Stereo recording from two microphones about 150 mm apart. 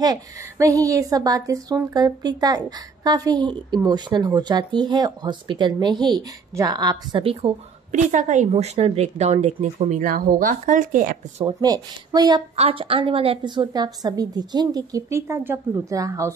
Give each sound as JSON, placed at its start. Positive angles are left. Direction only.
{"t": 0.0, "sound": "a woman's voice", "side_deg": -25}
{"t": 7.9, "sound": "speech", "side_deg": -55}
{"t": 11.4, "sound": "a woman's voice", "side_deg": -25}
{"t": 12.5, "sound": "a woman's voice", "side_deg": -40}